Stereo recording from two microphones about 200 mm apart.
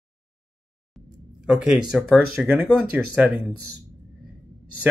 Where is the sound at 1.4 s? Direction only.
5° right (ahead or behind).